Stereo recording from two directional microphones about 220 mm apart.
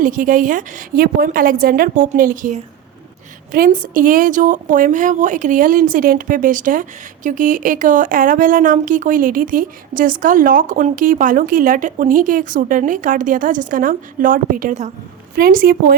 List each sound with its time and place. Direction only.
0.0 s a woman's voice: 40° right (ahead or behind)